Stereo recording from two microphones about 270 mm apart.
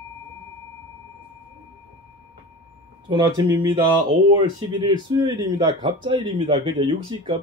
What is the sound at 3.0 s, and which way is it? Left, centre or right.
Speech, centre.